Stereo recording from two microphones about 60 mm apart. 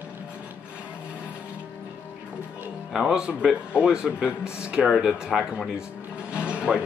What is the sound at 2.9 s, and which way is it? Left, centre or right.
Speech, centre.